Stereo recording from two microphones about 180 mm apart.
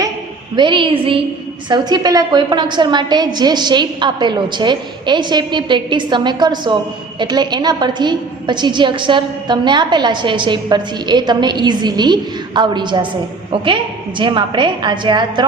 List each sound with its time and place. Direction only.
0.5 s a woman's voice: 25° right (ahead or behind)
14.2 s a woman's voice: 25° right (ahead or behind)